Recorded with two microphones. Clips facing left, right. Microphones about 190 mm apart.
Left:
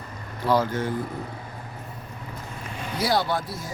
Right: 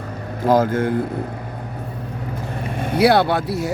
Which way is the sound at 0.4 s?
50° right (ahead or behind).